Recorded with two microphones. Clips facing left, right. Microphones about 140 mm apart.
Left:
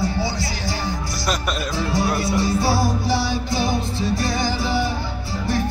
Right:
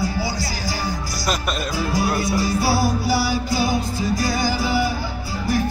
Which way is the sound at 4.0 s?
25° left (ahead or behind).